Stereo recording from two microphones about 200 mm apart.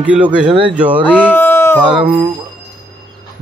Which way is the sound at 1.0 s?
5° left (ahead or behind).